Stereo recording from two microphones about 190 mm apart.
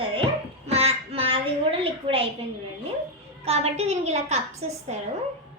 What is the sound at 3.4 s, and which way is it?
Speech, 35° right (ahead or behind).